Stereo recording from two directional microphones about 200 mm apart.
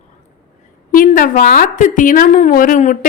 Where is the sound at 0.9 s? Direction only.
45° left (ahead or behind).